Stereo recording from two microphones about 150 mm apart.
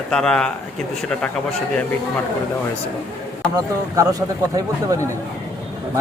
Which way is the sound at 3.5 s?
25° right (ahead or behind).